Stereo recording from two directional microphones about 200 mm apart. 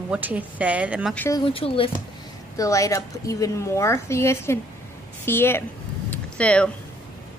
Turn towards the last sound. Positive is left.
turn(degrees=5)  # may be behind; listen again after turning